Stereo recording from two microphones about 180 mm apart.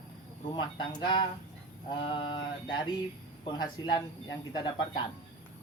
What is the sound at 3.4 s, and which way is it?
Speech, 30° left (ahead or behind).